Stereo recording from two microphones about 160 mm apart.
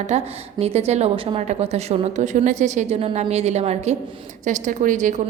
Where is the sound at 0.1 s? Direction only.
40° right (ahead or behind).